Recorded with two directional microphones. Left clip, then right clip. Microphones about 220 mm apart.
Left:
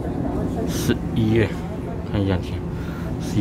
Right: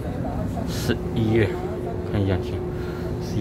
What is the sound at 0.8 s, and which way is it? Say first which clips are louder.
Speech: right 1 dB; centre (ahead or behind).